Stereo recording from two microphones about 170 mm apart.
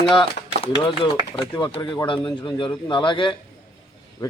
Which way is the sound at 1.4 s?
30° left (ahead or behind).